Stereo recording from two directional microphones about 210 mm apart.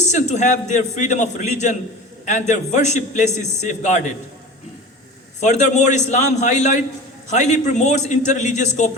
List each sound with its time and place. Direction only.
0.0 s a man's voice: 35° left (ahead or behind)
5.4 s a man's voice: 35° left (ahead or behind)